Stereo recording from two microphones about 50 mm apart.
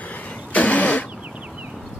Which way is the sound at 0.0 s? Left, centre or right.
Left.